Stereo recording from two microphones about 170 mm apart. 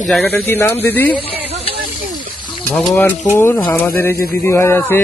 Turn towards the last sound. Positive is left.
turn(degrees=15)  # may be behind; listen again after turning